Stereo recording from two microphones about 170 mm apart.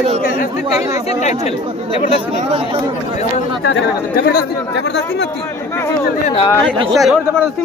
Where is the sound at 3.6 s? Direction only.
75° left (ahead or behind).